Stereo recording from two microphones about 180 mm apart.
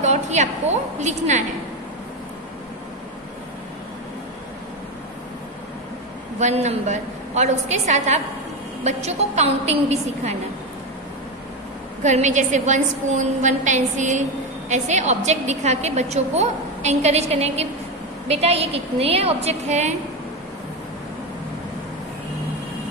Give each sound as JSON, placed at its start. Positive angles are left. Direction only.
{"t": 0.0, "sound": "a woman's voice", "side_deg": -40}
{"t": 6.4, "sound": "a woman's voice", "side_deg": -35}
{"t": 12.0, "sound": "a woman's voice", "side_deg": -40}